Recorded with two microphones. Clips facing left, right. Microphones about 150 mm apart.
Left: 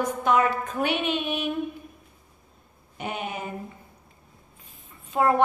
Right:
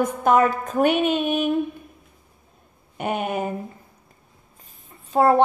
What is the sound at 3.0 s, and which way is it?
Speech, 55° right (ahead or behind).